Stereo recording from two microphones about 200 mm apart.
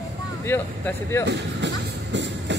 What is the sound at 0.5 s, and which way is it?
Speech, 10° left (ahead or behind).